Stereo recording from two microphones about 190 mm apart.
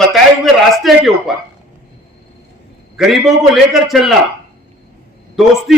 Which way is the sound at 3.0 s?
Centre (ahead or behind).